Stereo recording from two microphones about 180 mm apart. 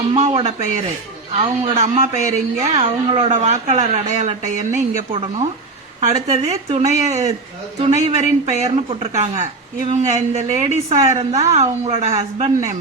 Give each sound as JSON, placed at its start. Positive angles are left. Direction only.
{"t": 0.1, "sound": "speech", "side_deg": -35}
{"t": 2.6, "sound": "a woman's voice", "side_deg": -25}
{"t": 3.2, "sound": "speech", "side_deg": -40}
{"t": 11.1, "sound": "a woman's voice", "side_deg": -20}
{"t": 11.3, "sound": "speech", "side_deg": -35}